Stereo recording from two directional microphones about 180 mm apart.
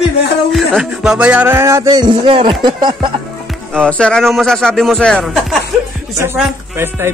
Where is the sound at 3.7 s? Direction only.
5° left (ahead or behind).